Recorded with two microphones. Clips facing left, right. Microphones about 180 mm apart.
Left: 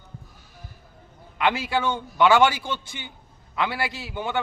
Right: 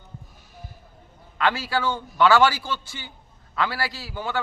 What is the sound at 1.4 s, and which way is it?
A man's voice, 20° left (ahead or behind).